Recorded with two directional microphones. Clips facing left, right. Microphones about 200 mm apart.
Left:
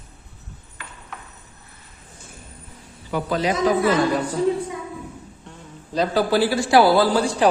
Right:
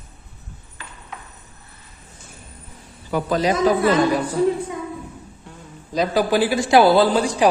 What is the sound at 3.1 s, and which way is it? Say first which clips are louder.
Speech: right 2 dB; 45° right (ahead or behind).